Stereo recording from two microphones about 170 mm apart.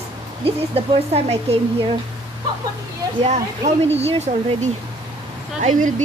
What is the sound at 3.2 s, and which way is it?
Speech, 40° right (ahead or behind).